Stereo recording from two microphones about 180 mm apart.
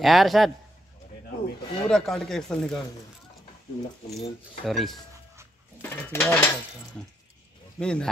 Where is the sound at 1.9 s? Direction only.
Centre (ahead or behind).